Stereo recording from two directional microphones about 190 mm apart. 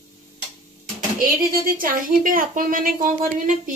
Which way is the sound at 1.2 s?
50° right (ahead or behind).